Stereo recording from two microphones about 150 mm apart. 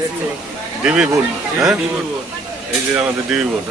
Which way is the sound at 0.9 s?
5° right (ahead or behind).